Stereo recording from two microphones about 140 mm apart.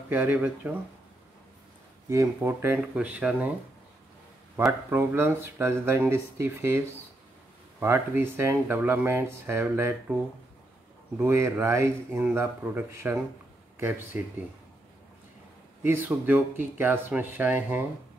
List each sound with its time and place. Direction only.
0.1 s speech: 15° right (ahead or behind)
2.0 s speech: 20° right (ahead or behind)
4.6 s speech: 15° right (ahead or behind)
7.8 s speech: 15° right (ahead or behind)
11.1 s speech: 20° right (ahead or behind)
15.8 s speech: 15° right (ahead or behind)